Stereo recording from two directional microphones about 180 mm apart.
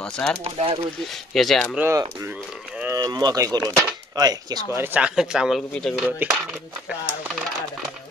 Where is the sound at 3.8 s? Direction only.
20° right (ahead or behind).